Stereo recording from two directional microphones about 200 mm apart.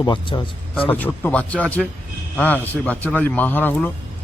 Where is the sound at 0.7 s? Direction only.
10° left (ahead or behind).